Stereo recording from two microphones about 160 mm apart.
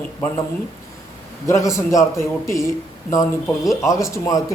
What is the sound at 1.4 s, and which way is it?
A woman's voice, 20° left (ahead or behind).